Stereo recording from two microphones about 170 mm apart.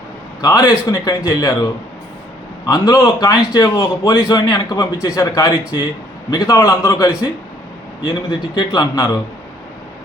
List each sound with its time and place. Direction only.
0.4 s a man's voice: 20° left (ahead or behind)
8.5 s a man's voice: 25° left (ahead or behind)